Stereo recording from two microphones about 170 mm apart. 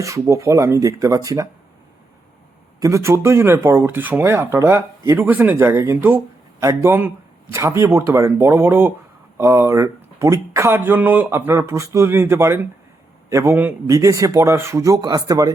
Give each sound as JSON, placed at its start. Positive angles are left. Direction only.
{"t": 0.0, "sound": "speech", "side_deg": -15}
{"t": 2.8, "sound": "speech", "side_deg": -15}